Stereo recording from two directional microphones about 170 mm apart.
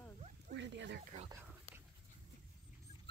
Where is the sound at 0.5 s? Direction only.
90° right.